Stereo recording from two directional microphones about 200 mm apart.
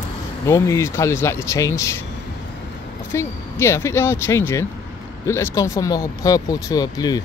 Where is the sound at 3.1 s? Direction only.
10° left (ahead or behind).